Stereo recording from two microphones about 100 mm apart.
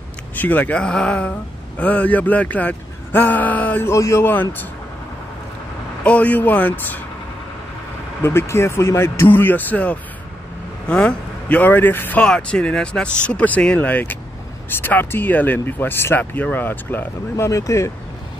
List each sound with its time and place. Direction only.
0.4 s a man's voice: 15° left (ahead or behind)
6.0 s a man's voice: 15° left (ahead or behind)
8.2 s a man's voice: 25° left (ahead or behind)
17.5 s speech: 30° left (ahead or behind)